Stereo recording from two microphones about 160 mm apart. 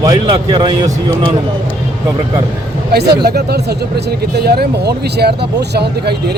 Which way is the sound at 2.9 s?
85° right.